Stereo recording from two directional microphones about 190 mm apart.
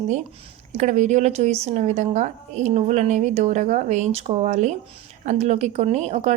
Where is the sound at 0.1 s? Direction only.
40° right (ahead or behind).